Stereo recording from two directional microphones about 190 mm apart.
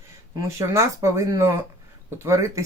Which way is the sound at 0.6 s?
15° right (ahead or behind).